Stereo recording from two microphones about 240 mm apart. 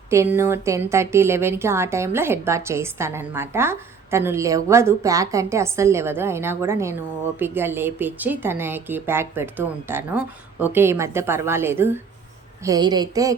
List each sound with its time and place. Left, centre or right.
0.1 s speech: centre